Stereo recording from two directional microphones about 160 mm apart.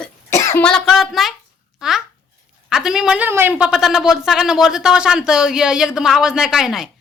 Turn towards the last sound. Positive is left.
turn(degrees=-5)  # may be behind; listen again after turning